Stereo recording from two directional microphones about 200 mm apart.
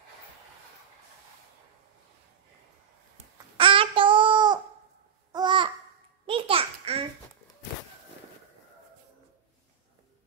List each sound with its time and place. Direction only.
3.5 s child singing: 25° right (ahead or behind)
5.3 s babbling: 20° right (ahead or behind)
6.2 s a sound: 25° right (ahead or behind)